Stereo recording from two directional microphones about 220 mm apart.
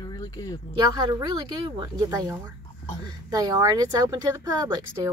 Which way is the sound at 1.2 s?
20° right (ahead or behind).